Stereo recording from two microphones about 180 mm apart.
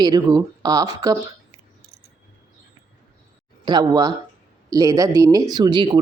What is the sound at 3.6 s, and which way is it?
A man's voice, 25° right (ahead or behind).